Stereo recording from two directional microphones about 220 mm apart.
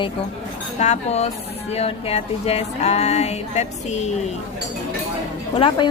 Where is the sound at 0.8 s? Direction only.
30° left (ahead or behind).